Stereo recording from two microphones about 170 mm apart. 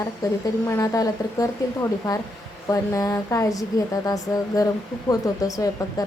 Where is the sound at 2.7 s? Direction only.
20° left (ahead or behind).